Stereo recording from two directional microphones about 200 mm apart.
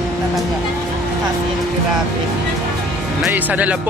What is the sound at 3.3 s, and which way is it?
Speech, 10° right (ahead or behind).